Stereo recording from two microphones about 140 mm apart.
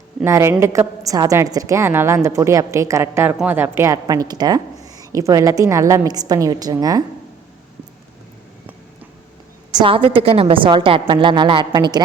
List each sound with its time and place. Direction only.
0.3 s a woman's voice: 20° right (ahead or behind)
9.8 s a woman's voice: 40° right (ahead or behind)